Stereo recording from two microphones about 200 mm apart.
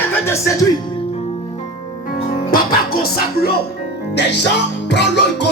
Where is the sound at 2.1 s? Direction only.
45° left (ahead or behind).